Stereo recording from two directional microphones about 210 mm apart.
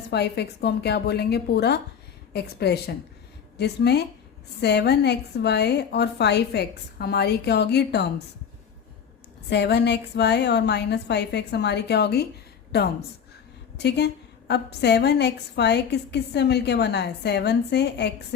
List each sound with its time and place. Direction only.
0.1 s a woman's voice: 50° left (ahead or behind)
9.5 s a woman's voice: 55° left (ahead or behind)
13.7 s a woman's voice: 55° left (ahead or behind)